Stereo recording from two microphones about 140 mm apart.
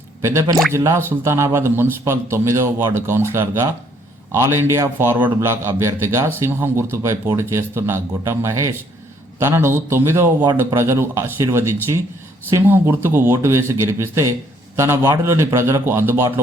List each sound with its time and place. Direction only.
0.2 s speech: 20° right (ahead or behind)